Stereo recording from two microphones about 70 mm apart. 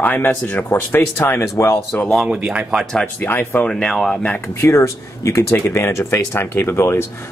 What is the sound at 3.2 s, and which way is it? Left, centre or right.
Speech, left.